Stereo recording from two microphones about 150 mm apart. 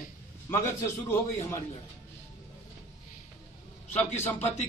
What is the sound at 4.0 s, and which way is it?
Speech, 15° left (ahead or behind).